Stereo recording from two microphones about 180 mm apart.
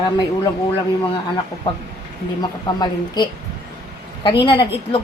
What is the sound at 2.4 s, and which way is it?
A woman's voice, 25° left (ahead or behind).